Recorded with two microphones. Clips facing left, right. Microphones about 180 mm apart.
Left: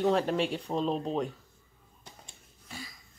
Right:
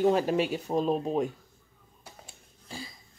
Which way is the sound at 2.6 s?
30° right (ahead or behind).